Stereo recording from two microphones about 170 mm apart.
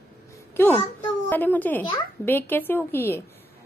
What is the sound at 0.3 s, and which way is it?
A child's voice, 10° left (ahead or behind).